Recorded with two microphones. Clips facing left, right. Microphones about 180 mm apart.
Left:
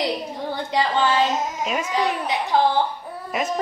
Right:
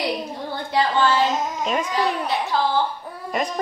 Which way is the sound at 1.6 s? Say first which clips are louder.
Right 2 dB; 5° left (ahead or behind).